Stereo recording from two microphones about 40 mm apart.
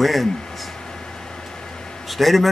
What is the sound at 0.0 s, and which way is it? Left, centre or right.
Speech, centre.